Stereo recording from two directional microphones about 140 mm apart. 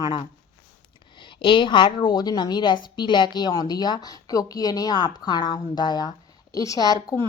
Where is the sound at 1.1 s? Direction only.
35° left (ahead or behind).